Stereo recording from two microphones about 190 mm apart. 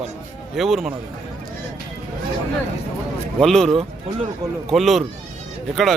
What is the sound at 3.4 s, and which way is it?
Speech, centre (ahead or behind).